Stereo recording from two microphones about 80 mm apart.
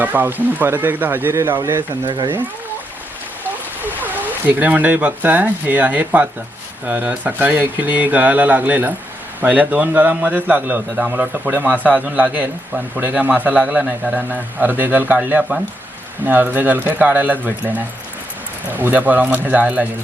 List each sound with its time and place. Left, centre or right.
0.0 s a man's voice: right
2.0 s speech: right
3.8 s a man's voice: right